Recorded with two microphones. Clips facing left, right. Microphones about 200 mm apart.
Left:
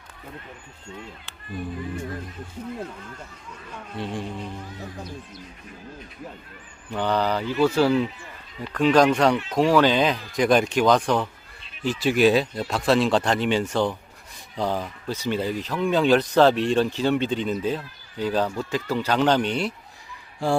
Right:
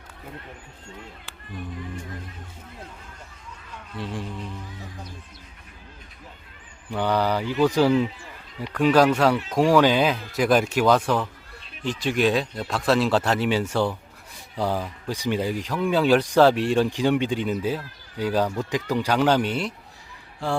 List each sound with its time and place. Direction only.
4.0 s speech: centre (ahead or behind)
6.9 s speech: 10° right (ahead or behind)
11.9 s speech: 5° left (ahead or behind)
20.4 s speech: 10° left (ahead or behind)